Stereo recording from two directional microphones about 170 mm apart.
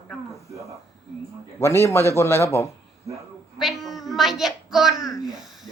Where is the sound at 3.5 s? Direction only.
Centre (ahead or behind).